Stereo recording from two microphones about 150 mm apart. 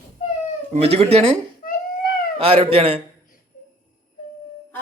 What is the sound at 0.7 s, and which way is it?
Speech, 45° right (ahead or behind).